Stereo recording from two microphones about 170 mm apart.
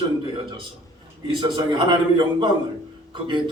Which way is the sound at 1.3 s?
25° right (ahead or behind).